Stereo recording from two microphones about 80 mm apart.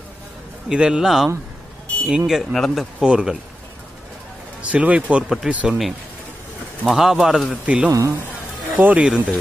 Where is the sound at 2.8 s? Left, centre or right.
Centre.